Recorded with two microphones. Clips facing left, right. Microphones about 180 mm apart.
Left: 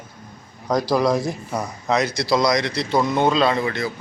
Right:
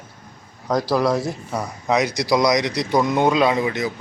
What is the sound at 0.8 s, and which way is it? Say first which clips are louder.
Speech: left 1 dB; 5° right (ahead or behind).